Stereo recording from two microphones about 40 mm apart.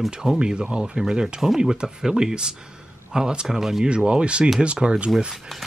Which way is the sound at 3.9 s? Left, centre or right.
Right.